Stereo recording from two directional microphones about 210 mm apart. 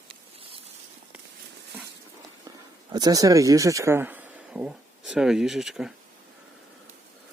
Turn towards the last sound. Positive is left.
turn(degrees=0)  # may be behind; listen again after turning